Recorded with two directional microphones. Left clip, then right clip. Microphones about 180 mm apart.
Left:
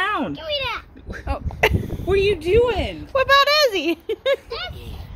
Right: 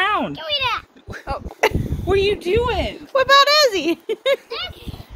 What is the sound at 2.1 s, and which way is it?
Speech, 55° right (ahead or behind).